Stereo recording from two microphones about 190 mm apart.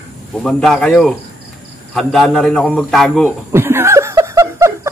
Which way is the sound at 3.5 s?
15° right (ahead or behind).